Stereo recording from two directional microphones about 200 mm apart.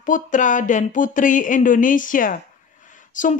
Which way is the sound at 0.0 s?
40° left (ahead or behind).